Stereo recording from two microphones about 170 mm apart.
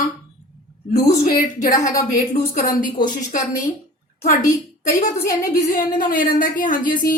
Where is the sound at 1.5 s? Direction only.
20° left (ahead or behind).